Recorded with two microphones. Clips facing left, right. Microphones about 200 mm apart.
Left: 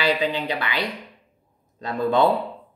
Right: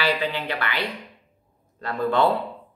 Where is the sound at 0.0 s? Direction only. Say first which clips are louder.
Left 2 dB; 15° left (ahead or behind).